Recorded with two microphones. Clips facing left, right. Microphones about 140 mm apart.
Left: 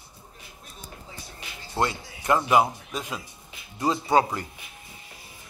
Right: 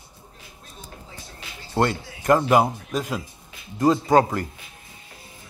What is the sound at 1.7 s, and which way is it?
Speech, 45° right (ahead or behind).